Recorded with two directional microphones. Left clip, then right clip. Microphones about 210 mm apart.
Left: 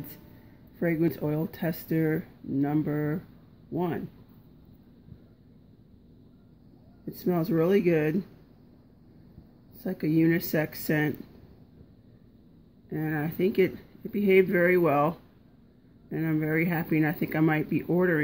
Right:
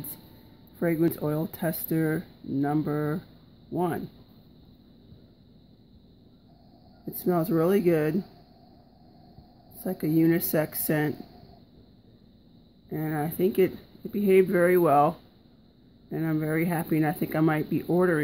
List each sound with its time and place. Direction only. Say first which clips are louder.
0.7 s speech: right 2 dB; 10° right (ahead or behind)
7.2 s speech: right 1 dB; 10° right (ahead or behind)
10.1 s speech: right 2 dB; 10° right (ahead or behind)
12.9 s speech: right 1 dB; 15° right (ahead or behind)